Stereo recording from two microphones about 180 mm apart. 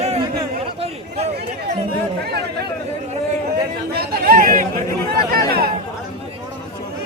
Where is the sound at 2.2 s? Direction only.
65° right (ahead or behind).